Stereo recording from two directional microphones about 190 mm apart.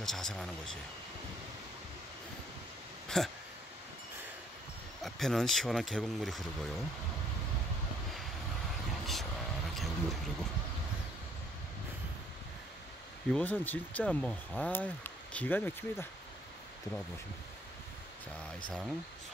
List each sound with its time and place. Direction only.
0.0 s speech: centre (ahead or behind)
3.1 s speech: 5° left (ahead or behind)
5.0 s speech: centre (ahead or behind)
9.0 s vehicle: centre (ahead or behind)
13.3 s speech: 10° left (ahead or behind)